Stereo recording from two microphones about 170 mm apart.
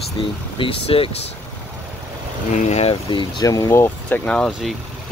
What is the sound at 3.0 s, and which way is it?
Speech, 30° left (ahead or behind).